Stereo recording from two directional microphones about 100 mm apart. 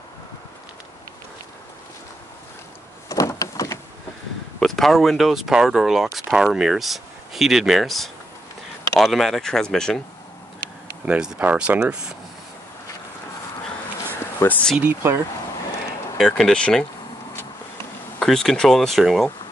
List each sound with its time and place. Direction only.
3.1 s a sound: 35° left (ahead or behind)
4.6 s speech: 5° left (ahead or behind)
11.1 s speech: 10° right (ahead or behind)
14.4 s speech: 20° left (ahead or behind)
14.8 s speech: 15° right (ahead or behind)
16.2 s speech: 5° left (ahead or behind)
18.2 s speech: 5° left (ahead or behind)